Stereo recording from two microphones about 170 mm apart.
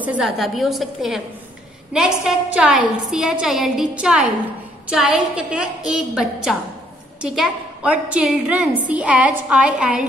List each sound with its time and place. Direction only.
0.0 s a woman's voice: 5° right (ahead or behind)